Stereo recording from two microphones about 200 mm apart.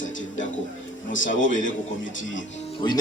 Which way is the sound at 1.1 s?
40° left (ahead or behind).